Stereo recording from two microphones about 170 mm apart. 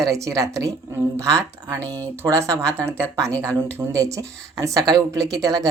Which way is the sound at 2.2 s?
15° right (ahead or behind).